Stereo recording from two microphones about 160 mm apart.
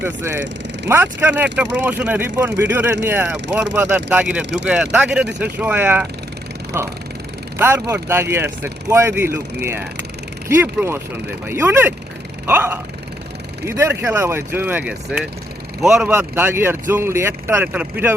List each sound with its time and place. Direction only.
0.0 s speech: 15° right (ahead or behind)